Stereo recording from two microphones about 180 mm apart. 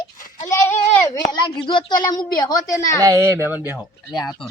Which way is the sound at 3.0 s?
20° right (ahead or behind).